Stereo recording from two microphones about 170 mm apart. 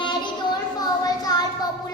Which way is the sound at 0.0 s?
30° left (ahead or behind).